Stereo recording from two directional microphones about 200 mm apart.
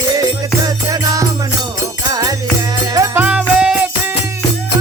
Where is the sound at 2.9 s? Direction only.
15° right (ahead or behind).